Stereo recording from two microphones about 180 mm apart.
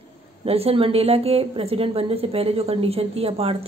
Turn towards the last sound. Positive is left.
turn(degrees=-35)  # may be behind; listen again after turning